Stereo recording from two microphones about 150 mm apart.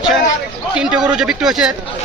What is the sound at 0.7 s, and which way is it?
Speech, 5° right (ahead or behind).